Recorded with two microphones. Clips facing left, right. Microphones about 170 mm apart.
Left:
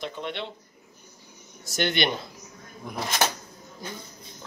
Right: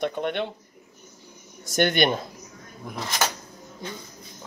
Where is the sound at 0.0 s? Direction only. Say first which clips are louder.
Right 7 dB; 55° right (ahead or behind).